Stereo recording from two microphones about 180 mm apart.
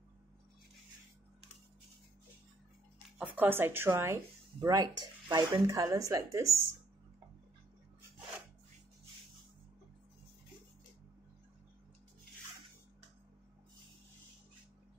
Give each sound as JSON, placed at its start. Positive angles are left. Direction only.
{"t": 3.2, "sound": "speech", "side_deg": -10}